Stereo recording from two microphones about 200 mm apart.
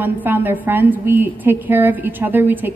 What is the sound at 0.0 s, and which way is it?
A woman's voice, 10° right (ahead or behind).